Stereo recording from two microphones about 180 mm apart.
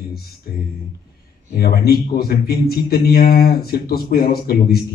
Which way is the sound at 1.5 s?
60° left (ahead or behind).